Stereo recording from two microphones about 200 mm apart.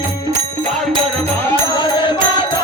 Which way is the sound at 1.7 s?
25° left (ahead or behind).